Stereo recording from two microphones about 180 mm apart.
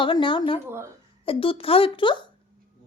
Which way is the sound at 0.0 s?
25° left (ahead or behind).